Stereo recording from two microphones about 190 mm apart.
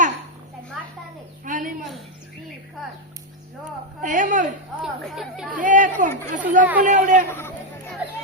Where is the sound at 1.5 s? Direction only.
45° right (ahead or behind).